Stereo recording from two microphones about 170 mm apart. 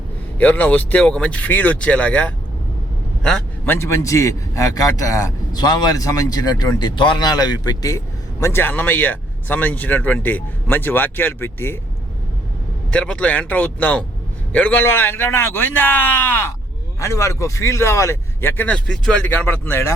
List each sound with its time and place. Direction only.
0.3 s a man's voice: 10° left (ahead or behind)
3.8 s a man's voice: 15° left (ahead or behind)
12.9 s speech: 5° left (ahead or behind)